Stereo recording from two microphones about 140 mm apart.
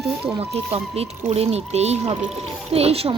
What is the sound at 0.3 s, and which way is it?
Speech, 45° right (ahead or behind).